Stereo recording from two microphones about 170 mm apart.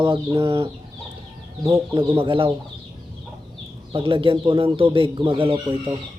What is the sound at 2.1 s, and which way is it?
Speech, 30° right (ahead or behind).